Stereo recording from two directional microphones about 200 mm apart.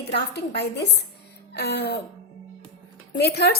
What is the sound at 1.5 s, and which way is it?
Throat clearing, 55° left (ahead or behind).